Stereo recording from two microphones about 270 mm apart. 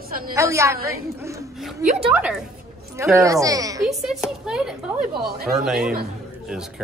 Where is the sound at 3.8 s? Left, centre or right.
Centre.